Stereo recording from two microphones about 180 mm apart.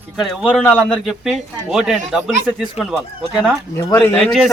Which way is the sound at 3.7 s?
10° left (ahead or behind).